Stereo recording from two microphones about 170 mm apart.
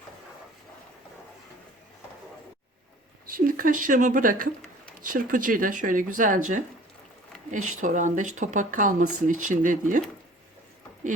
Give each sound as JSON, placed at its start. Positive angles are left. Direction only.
{"t": 3.2, "sound": "speech", "side_deg": -55}